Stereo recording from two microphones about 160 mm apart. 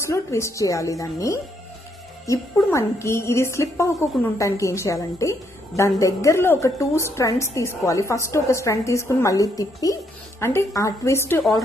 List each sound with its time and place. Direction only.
0.0 s a woman's voice: 20° left (ahead or behind)